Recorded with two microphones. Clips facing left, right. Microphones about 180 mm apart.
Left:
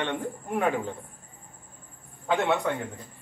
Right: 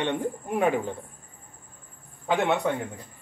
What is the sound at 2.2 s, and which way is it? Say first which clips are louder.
Speech: right 1 dB; 15° right (ahead or behind).